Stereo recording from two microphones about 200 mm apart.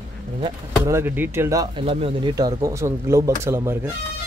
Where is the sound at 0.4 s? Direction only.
15° right (ahead or behind).